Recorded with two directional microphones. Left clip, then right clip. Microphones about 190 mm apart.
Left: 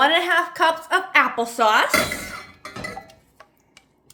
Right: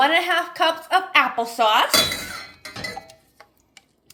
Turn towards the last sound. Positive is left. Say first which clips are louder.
# right 1 dB
turn(degrees=0)  # may be behind; listen again after turning